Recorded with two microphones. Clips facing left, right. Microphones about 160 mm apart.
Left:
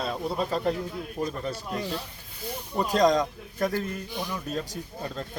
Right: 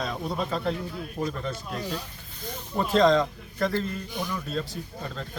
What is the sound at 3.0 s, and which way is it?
Speech, 15° left (ahead or behind).